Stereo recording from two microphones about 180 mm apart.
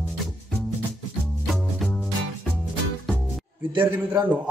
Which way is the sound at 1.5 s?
Centre (ahead or behind).